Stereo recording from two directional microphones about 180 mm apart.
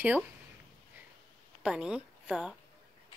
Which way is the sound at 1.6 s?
5° right (ahead or behind).